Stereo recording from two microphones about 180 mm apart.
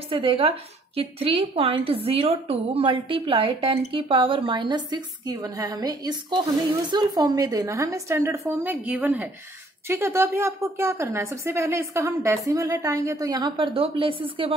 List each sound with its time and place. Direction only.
0.1 s a woman's voice: 30° right (ahead or behind)